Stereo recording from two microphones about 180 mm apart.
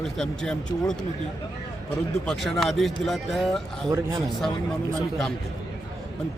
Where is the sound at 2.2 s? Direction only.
Centre (ahead or behind).